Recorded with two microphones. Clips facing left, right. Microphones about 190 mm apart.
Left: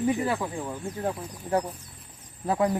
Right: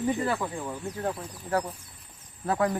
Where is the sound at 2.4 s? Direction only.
15° left (ahead or behind).